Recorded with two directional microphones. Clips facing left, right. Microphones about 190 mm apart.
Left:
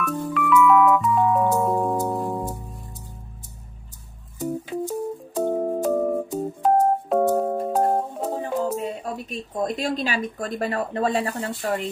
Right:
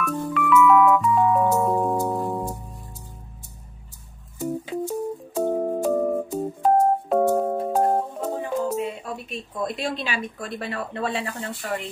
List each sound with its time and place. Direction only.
0.0 s music: centre (ahead or behind)
4.4 s music: 5° right (ahead or behind)
8.4 s speech: 40° left (ahead or behind)